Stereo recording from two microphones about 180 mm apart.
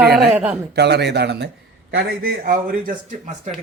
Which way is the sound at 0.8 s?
70° right (ahead or behind).